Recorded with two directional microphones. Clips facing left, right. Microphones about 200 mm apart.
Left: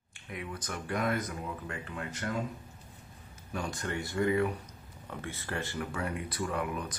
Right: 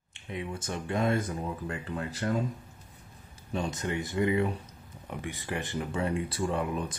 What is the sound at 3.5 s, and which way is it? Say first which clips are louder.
Speech: right 4 dB; 20° right (ahead or behind).